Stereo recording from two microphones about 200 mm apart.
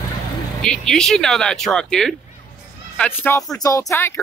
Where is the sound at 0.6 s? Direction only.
5° left (ahead or behind).